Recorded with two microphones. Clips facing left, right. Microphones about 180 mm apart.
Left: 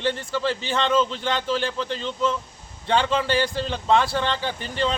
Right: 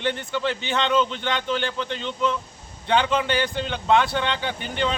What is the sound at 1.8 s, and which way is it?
Speech, 35° left (ahead or behind).